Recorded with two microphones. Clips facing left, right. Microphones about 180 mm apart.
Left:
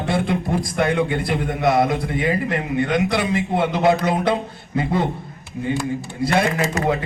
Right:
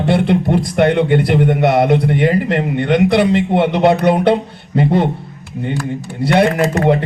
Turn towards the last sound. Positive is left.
turn(degrees=-65)  # may be behind; listen again after turning